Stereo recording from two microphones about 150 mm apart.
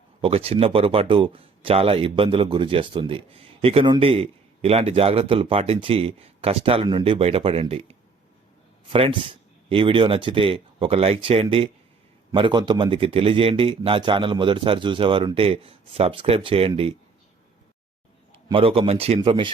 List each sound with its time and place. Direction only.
0.2 s a man's voice: 40° right (ahead or behind)
18.3 s a man's voice: 35° right (ahead or behind)